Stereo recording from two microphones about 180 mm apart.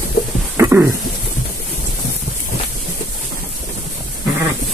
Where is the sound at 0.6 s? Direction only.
10° right (ahead or behind).